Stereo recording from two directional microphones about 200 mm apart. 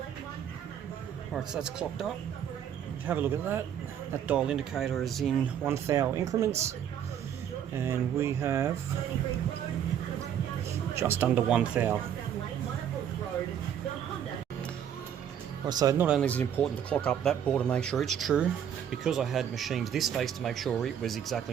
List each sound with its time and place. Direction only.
1.3 s speech: 5° right (ahead or behind)
3.1 s speech: 10° right (ahead or behind)
5.6 s speech: 15° right (ahead or behind)
7.8 s speech: 15° right (ahead or behind)
10.9 s speech: 10° right (ahead or behind)
15.6 s speech: 20° right (ahead or behind)
16.2 s speech: 5° left (ahead or behind)